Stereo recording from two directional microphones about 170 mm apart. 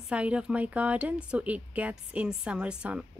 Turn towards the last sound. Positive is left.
turn(degrees=-5)  # may be behind; listen again after turning